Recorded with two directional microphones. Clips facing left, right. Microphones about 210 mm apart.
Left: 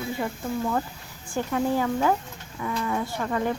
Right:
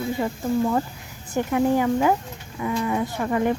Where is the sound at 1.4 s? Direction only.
15° right (ahead or behind).